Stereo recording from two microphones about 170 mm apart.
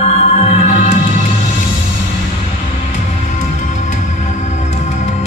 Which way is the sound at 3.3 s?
45° left (ahead or behind).